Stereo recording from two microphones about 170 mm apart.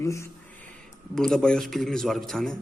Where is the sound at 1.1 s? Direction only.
Centre (ahead or behind).